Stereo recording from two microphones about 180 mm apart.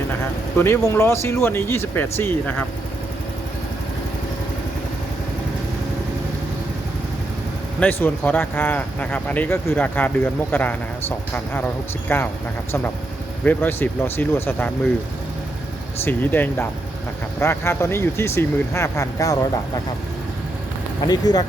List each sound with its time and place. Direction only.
0.6 s speech: 15° left (ahead or behind)
7.8 s speech: 10° left (ahead or behind)
12.0 s speech: 10° left (ahead or behind)
13.4 s speech: 10° left (ahead or behind)
16.0 s speech: 10° left (ahead or behind)
21.1 s speech: 20° left (ahead or behind)